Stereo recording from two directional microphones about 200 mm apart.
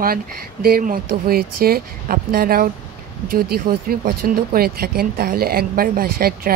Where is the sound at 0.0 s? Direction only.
50° right (ahead or behind).